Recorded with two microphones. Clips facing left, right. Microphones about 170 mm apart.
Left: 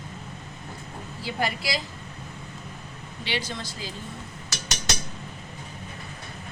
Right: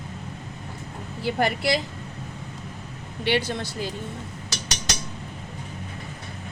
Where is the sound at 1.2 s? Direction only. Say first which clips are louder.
Right 6 dB; 60° right (ahead or behind).